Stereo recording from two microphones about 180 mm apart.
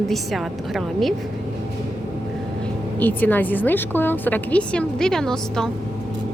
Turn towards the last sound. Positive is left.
turn(degrees=5)  # may be behind; listen again after turning